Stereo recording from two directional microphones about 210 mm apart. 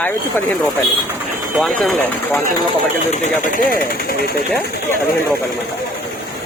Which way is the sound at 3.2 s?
40° left (ahead or behind).